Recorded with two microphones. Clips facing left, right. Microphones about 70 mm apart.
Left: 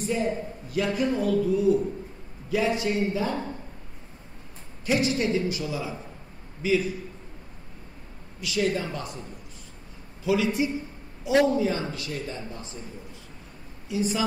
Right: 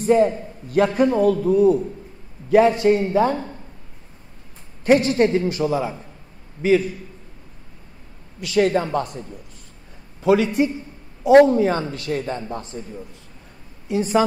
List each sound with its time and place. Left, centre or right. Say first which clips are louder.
0.0 s a man's voice: right 10 dB; right
4.8 s a man's voice: right 9 dB; right
8.4 s a man's voice: right 8 dB; right
10.2 s a man's voice: right 7 dB; right
13.8 s a man's voice: right 8 dB; right